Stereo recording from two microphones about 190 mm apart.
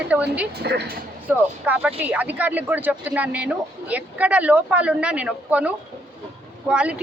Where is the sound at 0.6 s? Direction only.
60° right (ahead or behind).